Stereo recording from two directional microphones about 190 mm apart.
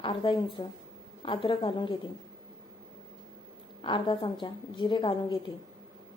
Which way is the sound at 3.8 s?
25° left (ahead or behind).